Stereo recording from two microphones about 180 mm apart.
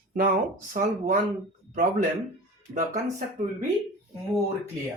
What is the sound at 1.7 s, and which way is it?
Speech, 45° right (ahead or behind).